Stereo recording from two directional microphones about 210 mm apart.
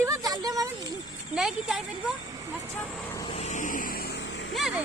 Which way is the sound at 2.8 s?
Centre (ahead or behind).